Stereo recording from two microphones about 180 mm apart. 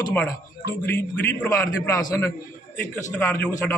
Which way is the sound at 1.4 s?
15° left (ahead or behind).